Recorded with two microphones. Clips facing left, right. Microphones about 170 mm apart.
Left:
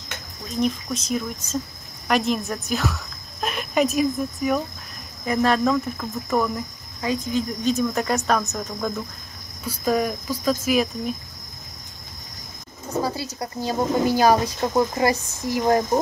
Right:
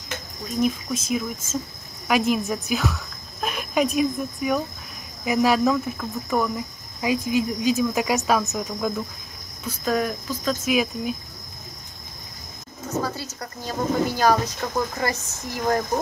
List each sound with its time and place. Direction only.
0.6 s speech: 5° right (ahead or behind)
7.0 s speech: 10° right (ahead or behind)
9.7 s cricket: 5° left (ahead or behind)
13.0 s cricket: 10° left (ahead or behind)
14.6 s speech: 25° left (ahead or behind)